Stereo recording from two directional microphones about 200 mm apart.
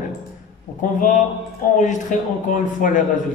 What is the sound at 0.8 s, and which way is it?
Speech, 40° left (ahead or behind).